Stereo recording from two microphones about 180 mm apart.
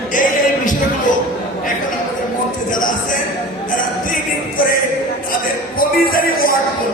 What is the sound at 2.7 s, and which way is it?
Music, 50° left (ahead or behind).